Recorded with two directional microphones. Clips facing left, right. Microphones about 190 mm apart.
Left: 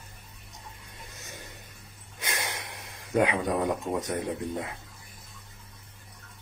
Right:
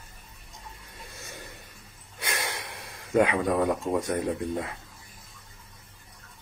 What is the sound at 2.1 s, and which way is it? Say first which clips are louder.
Gasp: right 2 dB; 15° left (ahead or behind).